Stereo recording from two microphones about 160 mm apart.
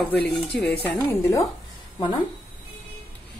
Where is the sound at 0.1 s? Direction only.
10° left (ahead or behind).